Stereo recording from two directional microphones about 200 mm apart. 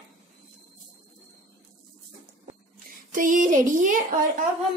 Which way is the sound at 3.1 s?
40° right (ahead or behind).